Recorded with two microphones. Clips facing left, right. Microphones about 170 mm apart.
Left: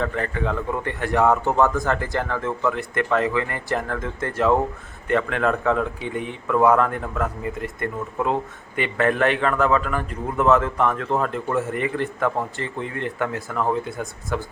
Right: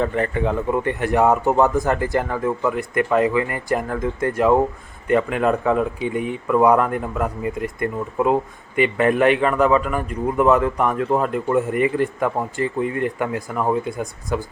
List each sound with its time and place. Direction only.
0.0 s speech: 20° right (ahead or behind)